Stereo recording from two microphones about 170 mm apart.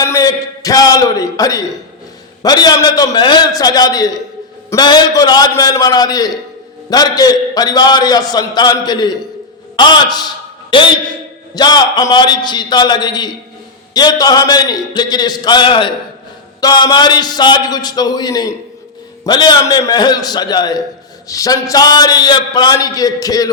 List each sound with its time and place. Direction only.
0.0 s a man's voice: 20° left (ahead or behind)